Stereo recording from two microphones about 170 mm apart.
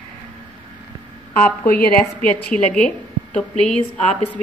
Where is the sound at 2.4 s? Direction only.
5° left (ahead or behind).